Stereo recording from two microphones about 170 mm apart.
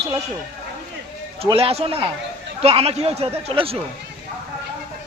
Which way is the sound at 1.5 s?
35° right (ahead or behind).